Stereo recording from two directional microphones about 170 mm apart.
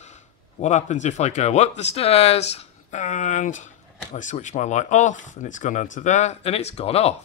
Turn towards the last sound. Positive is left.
turn(degrees=35)  # may be behind; listen again after turning